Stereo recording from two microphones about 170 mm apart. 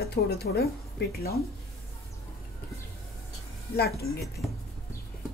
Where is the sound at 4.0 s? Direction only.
70° left (ahead or behind).